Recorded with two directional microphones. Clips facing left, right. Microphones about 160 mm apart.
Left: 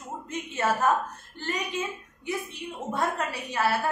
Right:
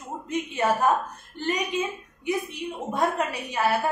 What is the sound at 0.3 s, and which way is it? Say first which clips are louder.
A woman's voice: right 3 dB; 15° right (ahead or behind).